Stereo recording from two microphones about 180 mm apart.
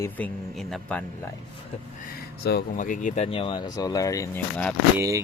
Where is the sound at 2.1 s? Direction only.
60° left (ahead or behind); by 4.4 s 15° left (ahead or behind).